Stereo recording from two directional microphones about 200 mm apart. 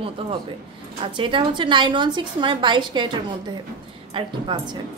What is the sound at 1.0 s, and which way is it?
A woman's voice, 25° right (ahead or behind).